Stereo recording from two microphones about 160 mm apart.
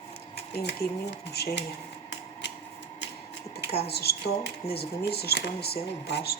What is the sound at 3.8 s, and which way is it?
A woman's voice, 85° left.